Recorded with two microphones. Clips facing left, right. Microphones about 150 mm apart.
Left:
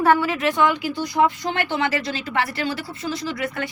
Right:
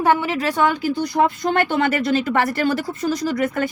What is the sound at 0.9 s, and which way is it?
Speech, 50° right (ahead or behind).